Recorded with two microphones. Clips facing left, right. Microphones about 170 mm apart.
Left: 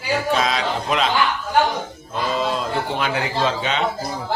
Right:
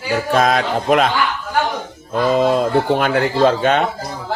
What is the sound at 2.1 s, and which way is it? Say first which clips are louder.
A man's voice: right 8 dB; 50° right (ahead or behind).